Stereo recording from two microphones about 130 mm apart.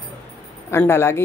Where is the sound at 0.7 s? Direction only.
20° left (ahead or behind).